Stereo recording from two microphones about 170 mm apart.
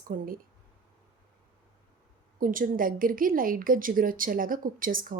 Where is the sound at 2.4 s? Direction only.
55° right (ahead or behind).